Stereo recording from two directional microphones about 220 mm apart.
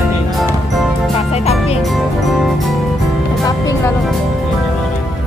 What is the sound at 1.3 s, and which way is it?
Music, 30° left (ahead or behind).